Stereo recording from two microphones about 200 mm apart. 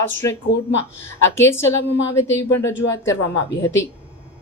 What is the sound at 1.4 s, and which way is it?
Speech, 10° left (ahead or behind).